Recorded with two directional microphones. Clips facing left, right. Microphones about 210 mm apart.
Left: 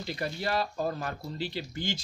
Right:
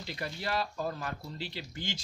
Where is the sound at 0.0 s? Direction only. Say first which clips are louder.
Left 5 dB; 40° left (ahead or behind).